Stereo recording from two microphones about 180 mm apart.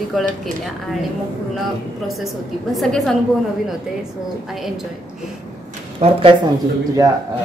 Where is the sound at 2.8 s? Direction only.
Centre (ahead or behind).